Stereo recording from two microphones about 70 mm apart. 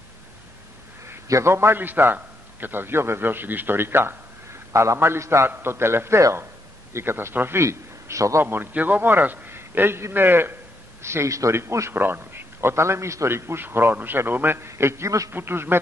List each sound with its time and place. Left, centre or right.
1.3 s a man's voice: right
8.5 s a man's voice: right
12.0 s a man's voice: right
15.3 s a man's voice: right